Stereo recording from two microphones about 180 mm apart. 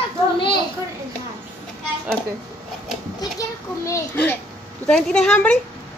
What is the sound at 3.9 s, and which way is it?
A child's voice, 10° left (ahead or behind).